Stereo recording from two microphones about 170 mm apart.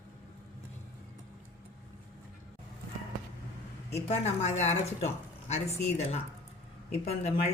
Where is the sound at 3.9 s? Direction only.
40° left (ahead or behind).